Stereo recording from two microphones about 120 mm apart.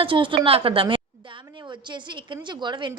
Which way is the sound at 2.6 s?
40° right (ahead or behind).